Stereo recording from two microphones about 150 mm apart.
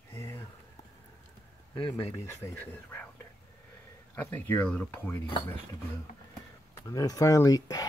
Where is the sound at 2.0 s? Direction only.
15° left (ahead or behind).